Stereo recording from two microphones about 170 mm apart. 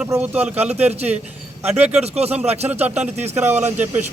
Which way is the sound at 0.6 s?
40° right (ahead or behind).